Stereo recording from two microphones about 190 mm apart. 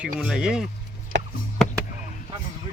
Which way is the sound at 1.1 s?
70° right (ahead or behind).